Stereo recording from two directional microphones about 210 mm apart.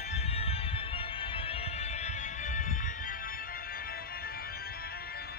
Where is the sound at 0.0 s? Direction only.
30° left (ahead or behind); by 5.2 s 45° left (ahead or behind).